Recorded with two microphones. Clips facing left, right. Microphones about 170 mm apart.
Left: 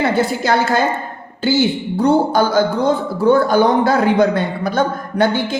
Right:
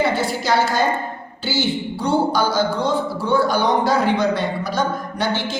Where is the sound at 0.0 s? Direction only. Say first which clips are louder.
Left 3 dB; 55° left (ahead or behind).